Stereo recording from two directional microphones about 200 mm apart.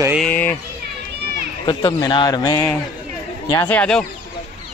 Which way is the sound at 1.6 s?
20° left (ahead or behind).